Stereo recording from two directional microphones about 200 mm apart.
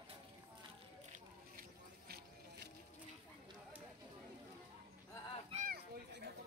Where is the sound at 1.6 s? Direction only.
50° right (ahead or behind).